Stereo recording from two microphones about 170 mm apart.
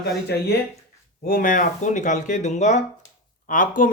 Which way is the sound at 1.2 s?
55° left (ahead or behind).